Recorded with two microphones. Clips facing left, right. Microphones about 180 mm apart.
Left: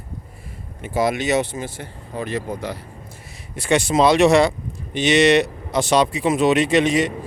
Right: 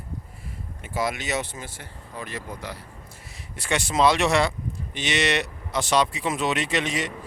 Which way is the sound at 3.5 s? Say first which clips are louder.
Left 6 dB; 15° left (ahead or behind).